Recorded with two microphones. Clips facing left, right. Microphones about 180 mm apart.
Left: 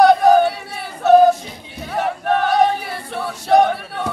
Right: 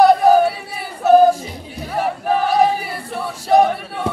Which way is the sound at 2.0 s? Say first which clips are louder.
Even; 5° right (ahead or behind).